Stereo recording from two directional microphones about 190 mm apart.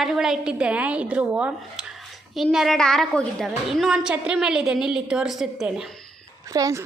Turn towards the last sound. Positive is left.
turn(degrees=-15)  # may be behind; listen again after turning